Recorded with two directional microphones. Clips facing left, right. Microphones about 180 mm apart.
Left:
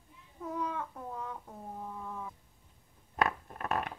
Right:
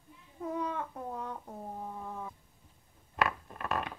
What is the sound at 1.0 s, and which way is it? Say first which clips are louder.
Speech: right 2 dB; 20° right (ahead or behind).